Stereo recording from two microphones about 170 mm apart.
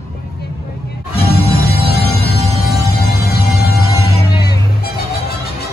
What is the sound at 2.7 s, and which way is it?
Music, 65° left (ahead or behind).